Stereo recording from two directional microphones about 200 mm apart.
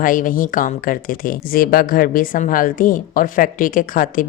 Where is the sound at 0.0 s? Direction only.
40° left (ahead or behind).